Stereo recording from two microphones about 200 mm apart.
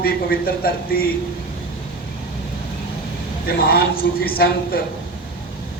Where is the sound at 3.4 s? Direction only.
50° left (ahead or behind).